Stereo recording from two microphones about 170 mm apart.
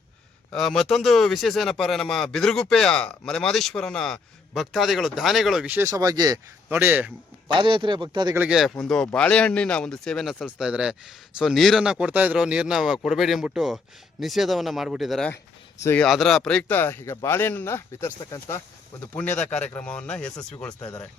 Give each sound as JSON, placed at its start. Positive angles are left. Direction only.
{"t": 0.5, "sound": "speech", "side_deg": 0}
{"t": 6.7, "sound": "speech", "side_deg": -10}
{"t": 7.6, "sound": "speech", "side_deg": -30}
{"t": 8.4, "sound": "speech", "side_deg": -5}
{"t": 15.8, "sound": "speech", "side_deg": 10}
{"t": 16.0, "sound": "speech", "side_deg": 0}